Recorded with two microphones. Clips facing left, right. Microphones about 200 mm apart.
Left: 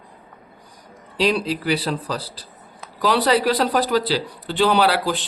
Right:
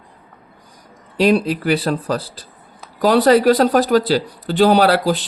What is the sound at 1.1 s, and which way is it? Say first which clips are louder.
Speech: right 5 dB; 50° right (ahead or behind).